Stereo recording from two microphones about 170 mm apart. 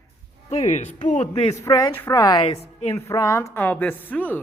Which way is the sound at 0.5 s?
40° left (ahead or behind).